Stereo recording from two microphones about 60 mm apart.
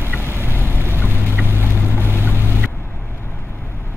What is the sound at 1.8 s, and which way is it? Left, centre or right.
Boat, right.